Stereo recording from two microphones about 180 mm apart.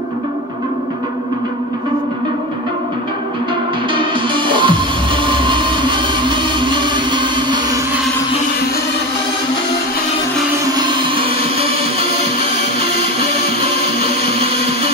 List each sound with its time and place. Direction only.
3.9 s music: 25° right (ahead or behind)
10.7 s music: 25° right (ahead or behind)
13.9 s music: 30° right (ahead or behind)